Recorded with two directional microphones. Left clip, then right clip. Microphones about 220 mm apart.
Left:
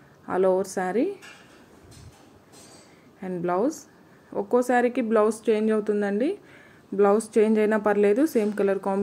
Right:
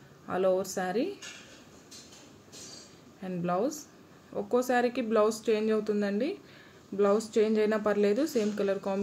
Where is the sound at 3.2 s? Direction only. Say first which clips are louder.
Left 5 dB; 15° left (ahead or behind).